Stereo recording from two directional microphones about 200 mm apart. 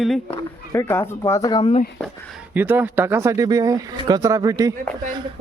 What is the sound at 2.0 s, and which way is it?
Speech, 5° right (ahead or behind).